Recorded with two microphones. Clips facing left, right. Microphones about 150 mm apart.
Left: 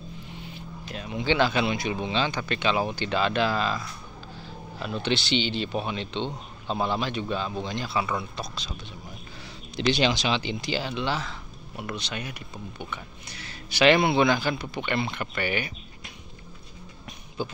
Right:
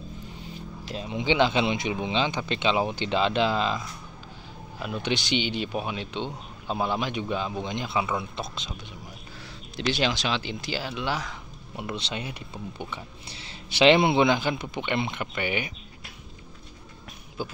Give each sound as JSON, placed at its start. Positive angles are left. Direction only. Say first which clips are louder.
{"t": 0.9, "sound": "speech", "louder": "right 1 dB", "side_deg": -20}
{"t": 9.8, "sound": "speech", "louder": "left 3 dB", "side_deg": 0}
{"t": 11.7, "sound": "speech", "louder": "right 1 dB", "side_deg": -25}
{"t": 17.4, "sound": "speech", "louder": "left 2 dB", "side_deg": -5}